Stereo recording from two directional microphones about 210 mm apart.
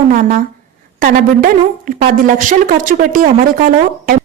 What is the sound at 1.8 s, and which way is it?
A woman's voice, 40° right (ahead or behind).